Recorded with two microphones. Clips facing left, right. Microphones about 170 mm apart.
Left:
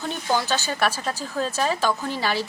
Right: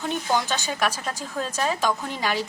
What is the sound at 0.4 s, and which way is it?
Speech, 15° right (ahead or behind).